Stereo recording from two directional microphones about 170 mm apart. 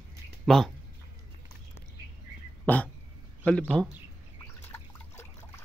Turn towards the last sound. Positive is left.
turn(degrees=15)  # may be behind; listen again after turning